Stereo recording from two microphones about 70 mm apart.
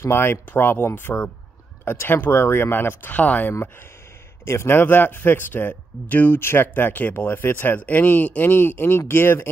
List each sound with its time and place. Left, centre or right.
0.0 s speech: left
4.5 s speech: left